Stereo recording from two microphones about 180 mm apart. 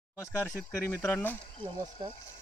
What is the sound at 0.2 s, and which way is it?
Speech, 10° left (ahead or behind).